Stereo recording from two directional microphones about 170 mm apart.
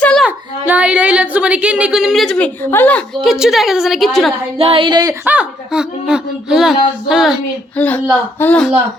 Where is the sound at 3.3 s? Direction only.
5° right (ahead or behind).